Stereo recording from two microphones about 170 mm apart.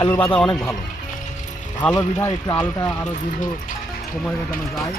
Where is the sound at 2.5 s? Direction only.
25° left (ahead or behind).